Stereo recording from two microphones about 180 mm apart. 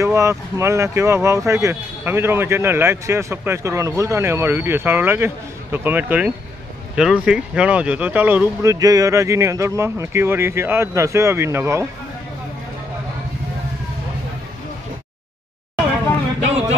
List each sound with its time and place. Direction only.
0.0 s speech: 15° right (ahead or behind)